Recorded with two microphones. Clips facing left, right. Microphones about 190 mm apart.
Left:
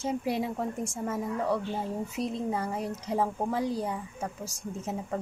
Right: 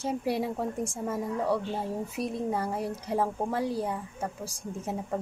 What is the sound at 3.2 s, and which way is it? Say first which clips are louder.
Speech: left 1 dB; 15° left (ahead or behind).